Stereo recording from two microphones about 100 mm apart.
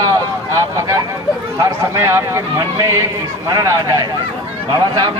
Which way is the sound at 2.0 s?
25° right (ahead or behind).